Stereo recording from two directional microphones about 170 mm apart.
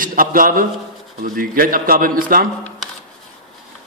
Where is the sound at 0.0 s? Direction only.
55° right (ahead or behind).